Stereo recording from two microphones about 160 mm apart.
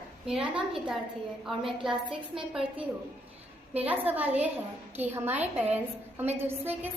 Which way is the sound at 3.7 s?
10° right (ahead or behind).